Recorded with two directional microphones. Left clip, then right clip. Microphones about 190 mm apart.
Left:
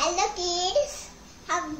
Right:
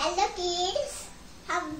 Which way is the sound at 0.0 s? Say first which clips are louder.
Left 2 dB; 20° left (ahead or behind).